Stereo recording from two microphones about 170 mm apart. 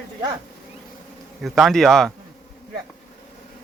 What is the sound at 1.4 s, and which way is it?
Speech, centre (ahead or behind).